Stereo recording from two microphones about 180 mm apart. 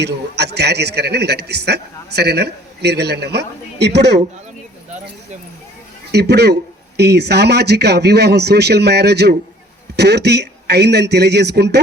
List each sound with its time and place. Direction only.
0.0 s a man's voice: 65° right (ahead or behind)
6.1 s a man's voice: 65° right (ahead or behind)